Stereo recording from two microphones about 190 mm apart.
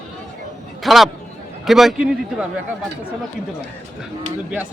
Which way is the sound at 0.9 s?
Centre (ahead or behind).